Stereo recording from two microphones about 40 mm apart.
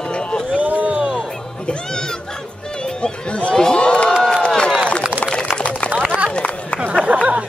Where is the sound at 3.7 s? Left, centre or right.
Left.